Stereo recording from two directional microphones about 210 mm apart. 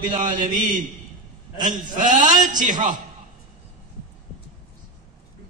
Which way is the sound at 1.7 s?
35° right (ahead or behind).